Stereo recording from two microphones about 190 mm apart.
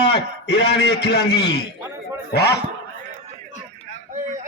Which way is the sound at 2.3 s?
60° left (ahead or behind).